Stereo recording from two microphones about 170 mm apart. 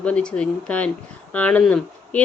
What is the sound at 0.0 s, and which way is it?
Speech, 5° left (ahead or behind).